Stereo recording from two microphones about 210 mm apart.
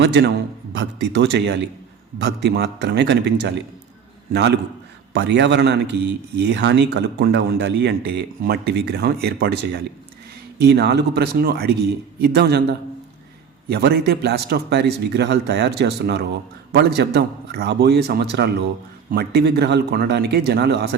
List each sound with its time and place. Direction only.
0.0 s a man's voice: 55° right (ahead or behind)
10.6 s a man's voice: 50° right (ahead or behind)